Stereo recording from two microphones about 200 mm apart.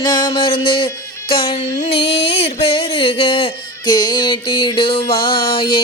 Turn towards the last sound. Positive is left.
turn(degrees=25)  # may be behind; listen again after turning